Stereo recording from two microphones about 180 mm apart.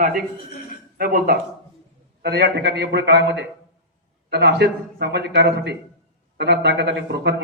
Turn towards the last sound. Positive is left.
turn(degrees=-70)  # may be behind; listen again after turning